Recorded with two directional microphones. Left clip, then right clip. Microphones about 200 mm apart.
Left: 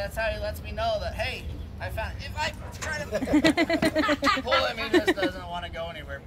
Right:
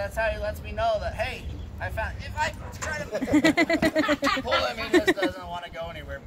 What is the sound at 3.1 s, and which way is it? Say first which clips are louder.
Speech: left 1 dB; 50° left (ahead or behind).